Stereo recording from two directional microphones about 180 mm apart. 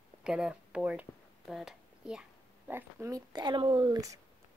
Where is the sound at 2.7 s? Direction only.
15° right (ahead or behind).